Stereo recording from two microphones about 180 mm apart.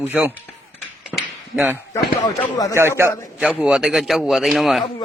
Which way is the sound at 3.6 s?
5° right (ahead or behind).